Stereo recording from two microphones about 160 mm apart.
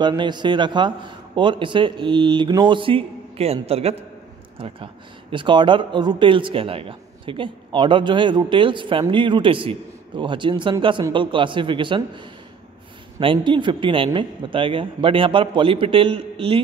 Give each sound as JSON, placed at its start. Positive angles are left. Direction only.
{"t": 0.0, "sound": "a man's voice", "side_deg": -30}